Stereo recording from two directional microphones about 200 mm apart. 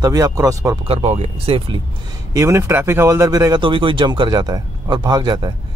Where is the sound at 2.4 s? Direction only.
15° right (ahead or behind).